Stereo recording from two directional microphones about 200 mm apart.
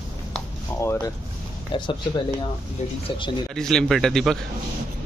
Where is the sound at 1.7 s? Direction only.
25° left (ahead or behind).